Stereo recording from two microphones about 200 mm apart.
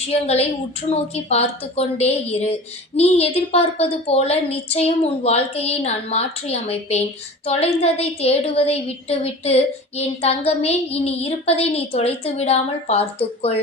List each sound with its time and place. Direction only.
0.1 s a woman's voice: 30° left (ahead or behind)